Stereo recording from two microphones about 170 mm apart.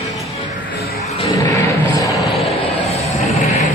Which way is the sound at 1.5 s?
20° left (ahead or behind).